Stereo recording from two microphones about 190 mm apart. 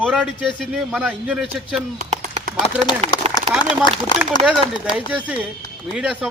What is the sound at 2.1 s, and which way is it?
Clip-clop, 35° right (ahead or behind).